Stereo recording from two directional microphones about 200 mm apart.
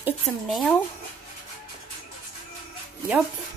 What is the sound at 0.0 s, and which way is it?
Speech, centre (ahead or behind).